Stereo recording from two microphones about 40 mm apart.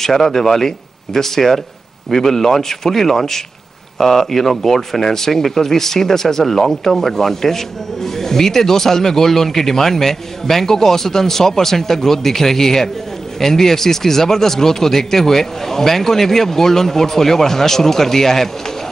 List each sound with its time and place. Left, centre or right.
0.0 s speech: centre